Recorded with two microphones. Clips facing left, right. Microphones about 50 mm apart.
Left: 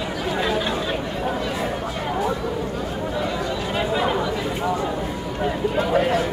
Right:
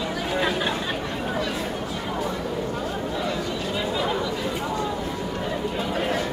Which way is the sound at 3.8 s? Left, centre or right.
Left.